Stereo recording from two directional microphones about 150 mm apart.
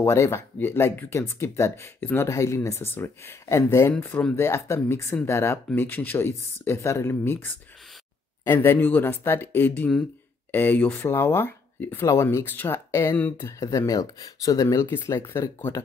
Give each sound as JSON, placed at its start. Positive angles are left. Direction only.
{"t": 0.0, "sound": "speech", "side_deg": 20}